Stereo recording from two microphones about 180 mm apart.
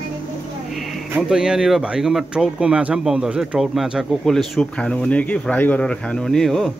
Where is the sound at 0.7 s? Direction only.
Centre (ahead or behind).